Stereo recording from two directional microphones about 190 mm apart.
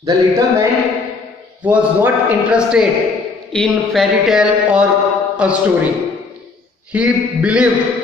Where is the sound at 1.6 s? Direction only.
5° right (ahead or behind).